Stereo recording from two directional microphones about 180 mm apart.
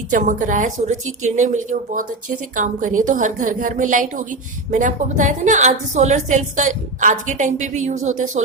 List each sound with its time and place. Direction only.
0.1 s a woman's voice: 45° right (ahead or behind)